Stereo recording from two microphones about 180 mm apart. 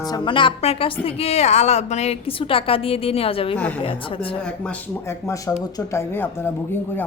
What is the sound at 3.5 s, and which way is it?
Speech, 5° left (ahead or behind).